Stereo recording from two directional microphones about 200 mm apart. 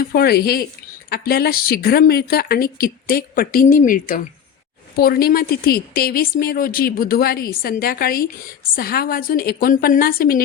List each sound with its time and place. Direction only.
0.0 s a woman's voice: 50° left (ahead or behind)